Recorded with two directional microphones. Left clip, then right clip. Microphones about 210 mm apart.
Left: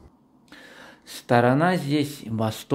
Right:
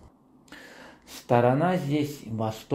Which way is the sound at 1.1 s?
20° left (ahead or behind).